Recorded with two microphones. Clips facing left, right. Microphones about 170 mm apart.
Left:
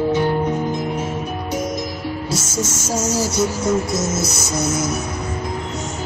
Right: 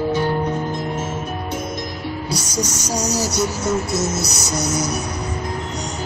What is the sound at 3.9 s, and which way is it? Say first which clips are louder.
Speech: left 1 dB; 50° left (ahead or behind).